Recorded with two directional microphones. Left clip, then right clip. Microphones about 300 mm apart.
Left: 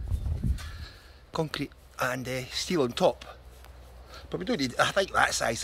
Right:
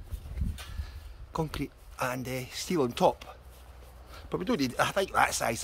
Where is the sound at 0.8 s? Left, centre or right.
Centre.